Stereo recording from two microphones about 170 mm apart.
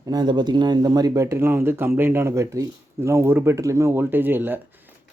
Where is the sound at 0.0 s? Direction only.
25° right (ahead or behind).